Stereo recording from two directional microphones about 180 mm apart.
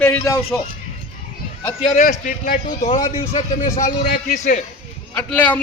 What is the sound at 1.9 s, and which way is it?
A man's voice, 45° left (ahead or behind).